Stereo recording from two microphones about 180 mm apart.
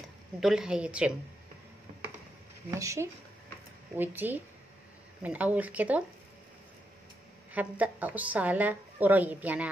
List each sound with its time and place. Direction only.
0.4 s a woman's voice: 5° right (ahead or behind)
2.7 s a woman's voice: 15° right (ahead or behind)
7.5 s a woman's voice: 10° right (ahead or behind)